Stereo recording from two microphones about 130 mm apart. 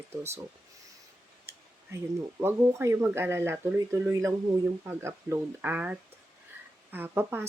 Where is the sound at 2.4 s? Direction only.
20° right (ahead or behind).